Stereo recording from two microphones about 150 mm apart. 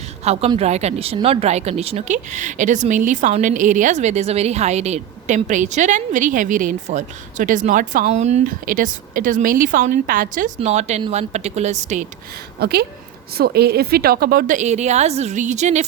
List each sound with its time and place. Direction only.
0.3 s a woman's voice: 45° right (ahead or behind); by 8.1 s 65° right (ahead or behind)
8.1 s a woman's voice: 50° right (ahead or behind)
10.6 s a woman's voice: 45° right (ahead or behind)
12.5 s a woman's voice: 90° right; by 15.9 s 50° right (ahead or behind)